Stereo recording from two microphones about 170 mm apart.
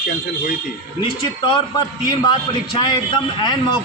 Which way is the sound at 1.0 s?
30° left (ahead or behind).